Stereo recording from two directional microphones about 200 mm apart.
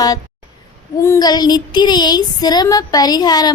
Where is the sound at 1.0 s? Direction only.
15° left (ahead or behind).